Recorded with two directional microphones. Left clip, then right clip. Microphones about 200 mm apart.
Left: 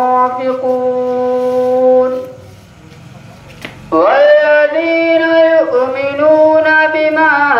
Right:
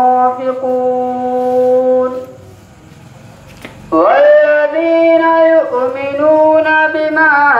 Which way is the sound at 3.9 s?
30° left (ahead or behind).